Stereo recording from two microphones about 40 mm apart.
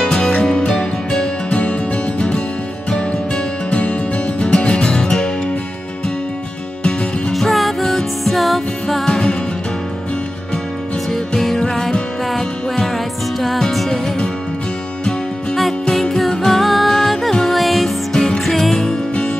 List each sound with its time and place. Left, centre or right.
0.0 s music: centre
1.5 s music: left
3.7 s music: left
6.8 s music: left
7.3 s music: centre
9.0 s music: centre
11.1 s music: centre
15.8 s music: centre